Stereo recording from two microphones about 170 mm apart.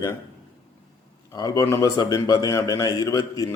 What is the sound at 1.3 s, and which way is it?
A man's voice, 20° left (ahead or behind).